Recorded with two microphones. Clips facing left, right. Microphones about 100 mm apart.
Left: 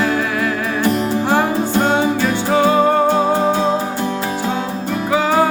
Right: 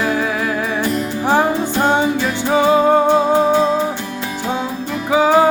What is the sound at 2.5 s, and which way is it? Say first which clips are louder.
Music: right 1 dB; 15° right (ahead or behind).